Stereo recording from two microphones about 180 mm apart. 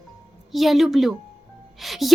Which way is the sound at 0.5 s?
Centre (ahead or behind).